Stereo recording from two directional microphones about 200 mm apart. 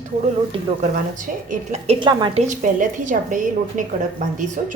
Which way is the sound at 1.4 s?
35° right (ahead or behind).